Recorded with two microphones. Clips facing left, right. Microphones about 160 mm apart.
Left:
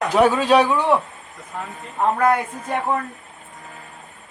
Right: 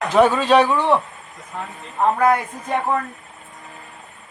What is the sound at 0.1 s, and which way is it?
Speech, 10° left (ahead or behind).